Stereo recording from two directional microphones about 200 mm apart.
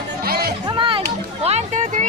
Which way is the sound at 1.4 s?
30° right (ahead or behind).